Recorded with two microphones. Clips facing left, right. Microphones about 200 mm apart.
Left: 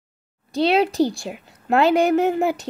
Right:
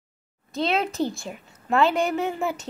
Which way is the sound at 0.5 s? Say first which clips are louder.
Left 7 dB; 35° left (ahead or behind).